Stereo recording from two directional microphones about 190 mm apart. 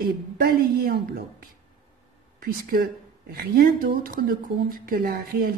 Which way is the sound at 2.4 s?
50° right (ahead or behind).